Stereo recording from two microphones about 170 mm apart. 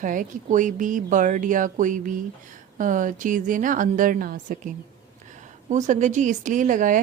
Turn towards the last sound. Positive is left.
turn(degrees=-50)  # may be behind; listen again after turning